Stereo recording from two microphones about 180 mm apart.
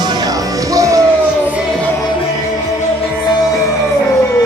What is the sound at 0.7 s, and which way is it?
Music, 20° right (ahead or behind).